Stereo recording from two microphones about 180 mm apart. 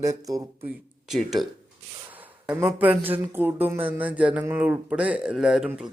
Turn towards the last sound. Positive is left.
turn(degrees=-5)  # may be behind; listen again after turning